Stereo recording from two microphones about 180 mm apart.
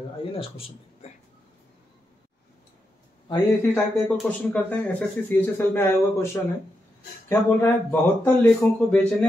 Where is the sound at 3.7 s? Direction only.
5° left (ahead or behind).